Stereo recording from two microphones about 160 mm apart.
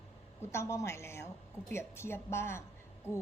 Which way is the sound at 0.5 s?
20° left (ahead or behind).